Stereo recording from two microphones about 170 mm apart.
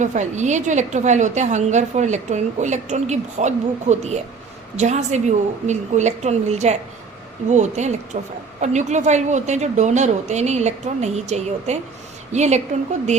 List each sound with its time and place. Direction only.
0.0 s a woman's voice: 45° right (ahead or behind)